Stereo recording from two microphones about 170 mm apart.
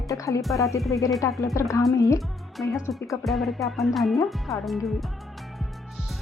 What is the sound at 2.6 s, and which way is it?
Music, 5° left (ahead or behind).